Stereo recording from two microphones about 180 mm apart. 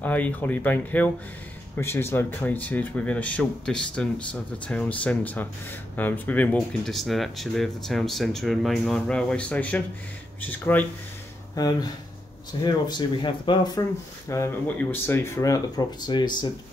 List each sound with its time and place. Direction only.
0.0 s speech: 10° left (ahead or behind)
11.5 s speech: 20° left (ahead or behind)
14.3 s speech: 15° left (ahead or behind)